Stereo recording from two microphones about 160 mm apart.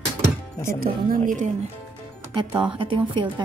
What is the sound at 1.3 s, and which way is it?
Speech, 50° right (ahead or behind).